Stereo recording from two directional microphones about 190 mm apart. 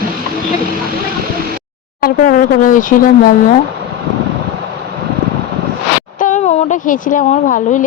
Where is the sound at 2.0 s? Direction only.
50° left (ahead or behind).